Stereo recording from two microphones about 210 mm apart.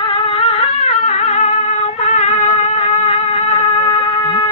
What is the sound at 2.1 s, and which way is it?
Music, 35° left (ahead or behind).